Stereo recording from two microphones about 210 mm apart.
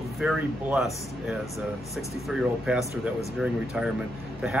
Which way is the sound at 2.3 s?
Centre (ahead or behind).